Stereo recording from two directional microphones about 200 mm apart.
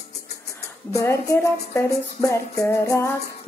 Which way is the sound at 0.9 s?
15° left (ahead or behind).